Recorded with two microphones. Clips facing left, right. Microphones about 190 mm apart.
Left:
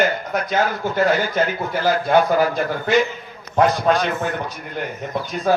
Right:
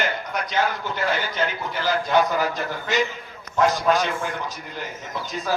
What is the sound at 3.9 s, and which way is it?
Speech, 10° right (ahead or behind).